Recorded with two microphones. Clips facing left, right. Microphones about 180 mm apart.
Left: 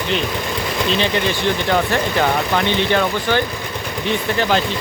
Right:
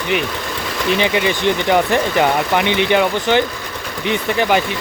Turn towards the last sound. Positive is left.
turn(degrees=-15)  # may be behind; listen again after turning